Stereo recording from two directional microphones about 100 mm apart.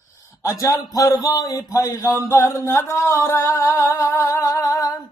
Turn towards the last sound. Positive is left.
turn(degrees=40)  # may be behind; listen again after turning